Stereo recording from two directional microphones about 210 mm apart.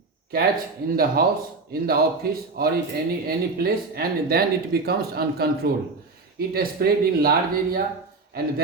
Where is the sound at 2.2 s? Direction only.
45° right (ahead or behind).